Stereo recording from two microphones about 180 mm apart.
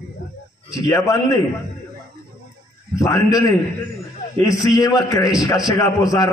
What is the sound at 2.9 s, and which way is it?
Speech, 20° left (ahead or behind).